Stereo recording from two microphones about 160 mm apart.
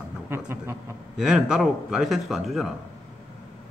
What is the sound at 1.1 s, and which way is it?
A man's voice, 5° right (ahead or behind).